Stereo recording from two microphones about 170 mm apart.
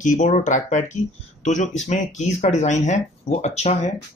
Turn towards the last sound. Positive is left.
turn(degrees=40)  # may be behind; listen again after turning